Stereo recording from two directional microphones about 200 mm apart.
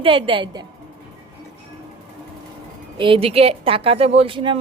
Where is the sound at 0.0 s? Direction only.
25° right (ahead or behind).